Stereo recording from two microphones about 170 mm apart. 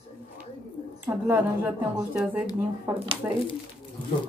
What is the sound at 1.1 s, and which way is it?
Speech, 10° right (ahead or behind).